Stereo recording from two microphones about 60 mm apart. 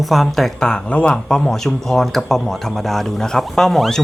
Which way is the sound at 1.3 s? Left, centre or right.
Centre.